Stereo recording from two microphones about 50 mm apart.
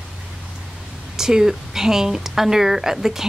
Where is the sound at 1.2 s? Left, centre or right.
Centre.